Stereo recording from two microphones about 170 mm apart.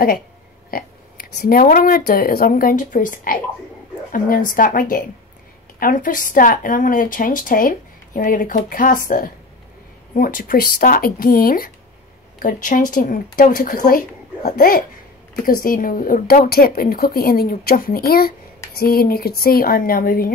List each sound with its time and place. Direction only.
0.7 s a woman's voice: 60° left (ahead or behind)